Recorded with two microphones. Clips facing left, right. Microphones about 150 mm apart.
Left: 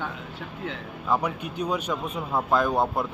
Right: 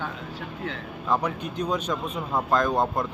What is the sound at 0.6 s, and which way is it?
A man's voice, 10° left (ahead or behind).